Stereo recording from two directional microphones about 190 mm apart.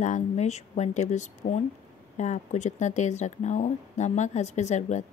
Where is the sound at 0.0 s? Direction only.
40° left (ahead or behind).